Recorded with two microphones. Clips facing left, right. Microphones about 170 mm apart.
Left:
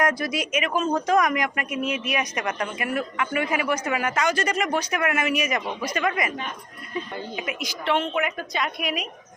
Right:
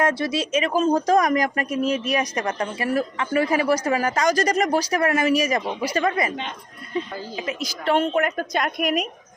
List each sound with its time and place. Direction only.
0.0 s speech: 25° right (ahead or behind); by 9.0 s 45° right (ahead or behind)